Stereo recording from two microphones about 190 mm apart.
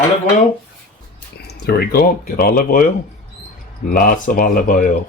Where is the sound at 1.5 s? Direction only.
55° left (ahead or behind).